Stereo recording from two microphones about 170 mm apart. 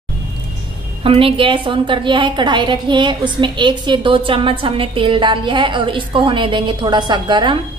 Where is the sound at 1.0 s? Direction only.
30° right (ahead or behind).